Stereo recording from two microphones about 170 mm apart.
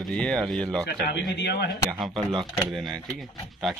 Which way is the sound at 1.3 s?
80° left.